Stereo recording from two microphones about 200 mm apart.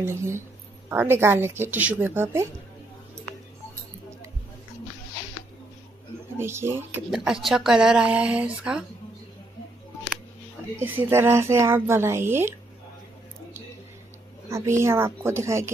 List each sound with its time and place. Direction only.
0.0 s speech: 15° right (ahead or behind)
6.3 s speech: 10° right (ahead or behind)
7.1 s speech: centre (ahead or behind)
10.8 s speech: 10° right (ahead or behind)
14.5 s speech: 15° right (ahead or behind)